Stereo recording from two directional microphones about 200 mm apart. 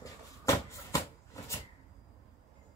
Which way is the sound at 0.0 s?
15° left (ahead or behind).